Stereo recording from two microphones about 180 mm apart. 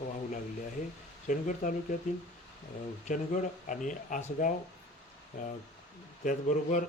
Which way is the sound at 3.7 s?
45° left (ahead or behind).